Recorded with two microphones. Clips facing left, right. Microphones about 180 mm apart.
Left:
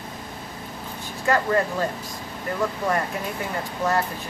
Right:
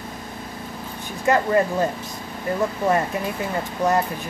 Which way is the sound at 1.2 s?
20° right (ahead or behind).